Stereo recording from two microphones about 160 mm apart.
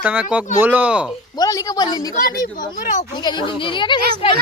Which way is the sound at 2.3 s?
60° left (ahead or behind).